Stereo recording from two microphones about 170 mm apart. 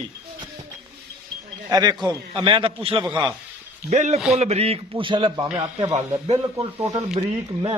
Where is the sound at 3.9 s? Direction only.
40° right (ahead or behind).